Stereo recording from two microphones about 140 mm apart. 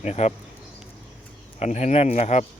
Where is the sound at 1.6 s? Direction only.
55° left (ahead or behind).